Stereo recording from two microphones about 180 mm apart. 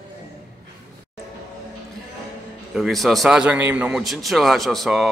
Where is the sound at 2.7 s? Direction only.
Centre (ahead or behind).